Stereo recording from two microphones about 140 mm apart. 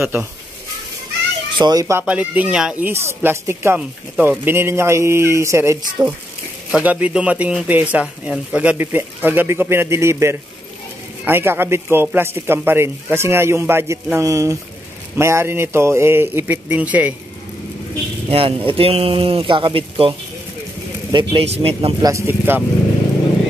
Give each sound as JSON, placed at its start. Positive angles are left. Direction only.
{"t": 0.0, "sound": "speech", "side_deg": -10}
{"t": 1.6, "sound": "speech", "side_deg": -25}
{"t": 2.0, "sound": "speech", "side_deg": -10}
{"t": 6.7, "sound": "speech", "side_deg": -10}
{"t": 18.3, "sound": "speech", "side_deg": -40}
{"t": 22.0, "sound": "speech", "side_deg": -20}